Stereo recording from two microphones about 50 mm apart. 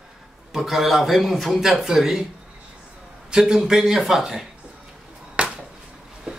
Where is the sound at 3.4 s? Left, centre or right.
Centre.